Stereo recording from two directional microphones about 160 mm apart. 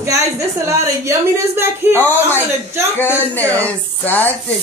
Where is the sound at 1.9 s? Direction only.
10° left (ahead or behind).